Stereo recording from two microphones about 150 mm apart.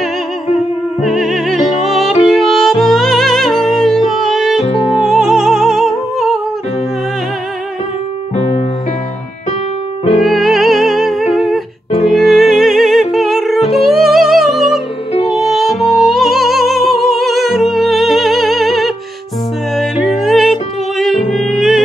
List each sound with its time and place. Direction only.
0.6 s music: centre (ahead or behind)
4.6 s music: 40° left (ahead or behind)
5.2 s music: centre (ahead or behind)
8.4 s music: 40° left (ahead or behind)
10.2 s music: centre (ahead or behind)